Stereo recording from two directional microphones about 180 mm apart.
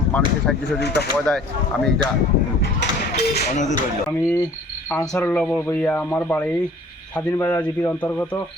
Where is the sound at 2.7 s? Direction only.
65° left (ahead or behind).